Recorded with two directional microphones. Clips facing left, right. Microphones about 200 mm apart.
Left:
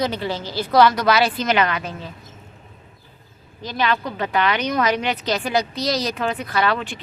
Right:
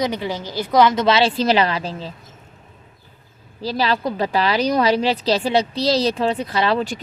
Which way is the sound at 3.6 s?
30° right (ahead or behind).